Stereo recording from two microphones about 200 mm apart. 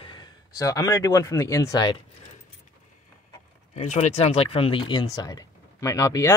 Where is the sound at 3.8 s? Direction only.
35° left (ahead or behind).